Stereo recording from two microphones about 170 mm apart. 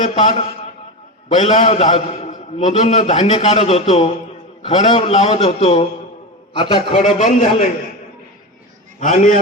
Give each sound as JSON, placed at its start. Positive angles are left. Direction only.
{"t": 0.0, "sound": "speech", "side_deg": 45}
{"t": 1.5, "sound": "a man's voice", "side_deg": 40}
{"t": 7.0, "sound": "speech", "side_deg": 45}
{"t": 9.0, "sound": "a man's voice", "side_deg": 50}